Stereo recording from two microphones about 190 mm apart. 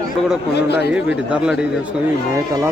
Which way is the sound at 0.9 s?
5° right (ahead or behind).